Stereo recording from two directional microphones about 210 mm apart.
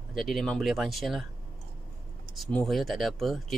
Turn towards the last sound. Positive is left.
turn(degrees=0)  # may be behind; listen again after turning